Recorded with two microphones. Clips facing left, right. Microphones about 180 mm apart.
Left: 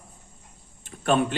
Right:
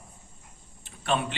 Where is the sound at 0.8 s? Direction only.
45° left (ahead or behind).